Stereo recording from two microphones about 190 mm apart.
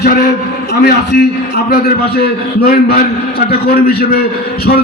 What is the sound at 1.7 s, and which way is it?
Speech, 55° left (ahead or behind).